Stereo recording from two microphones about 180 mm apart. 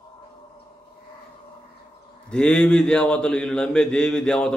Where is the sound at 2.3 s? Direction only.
5° left (ahead or behind).